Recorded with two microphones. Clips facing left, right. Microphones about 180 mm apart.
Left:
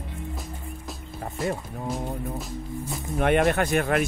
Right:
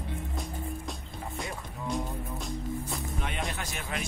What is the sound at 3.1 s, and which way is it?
Speech, 60° left (ahead or behind).